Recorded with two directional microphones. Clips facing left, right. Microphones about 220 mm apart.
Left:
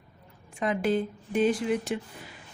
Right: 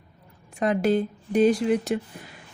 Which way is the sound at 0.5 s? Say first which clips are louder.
Right 4 dB; 40° right (ahead or behind).